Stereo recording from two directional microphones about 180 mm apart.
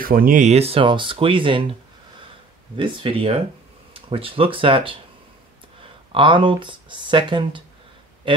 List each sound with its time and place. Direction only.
0.0 s speech: 50° right (ahead or behind); by 1.8 s 30° right (ahead or behind)
2.8 s speech: 30° right (ahead or behind)
6.1 s speech: 30° right (ahead or behind)